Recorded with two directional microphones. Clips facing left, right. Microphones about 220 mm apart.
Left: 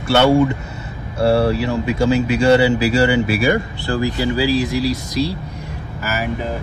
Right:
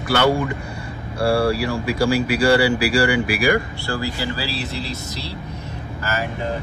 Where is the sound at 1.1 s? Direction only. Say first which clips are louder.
Left 3 dB; 25° left (ahead or behind).